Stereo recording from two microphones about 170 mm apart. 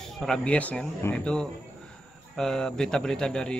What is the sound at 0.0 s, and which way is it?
Speech, 5° left (ahead or behind).